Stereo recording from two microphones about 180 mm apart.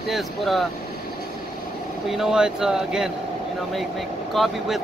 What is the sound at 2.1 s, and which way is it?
Speech, centre (ahead or behind).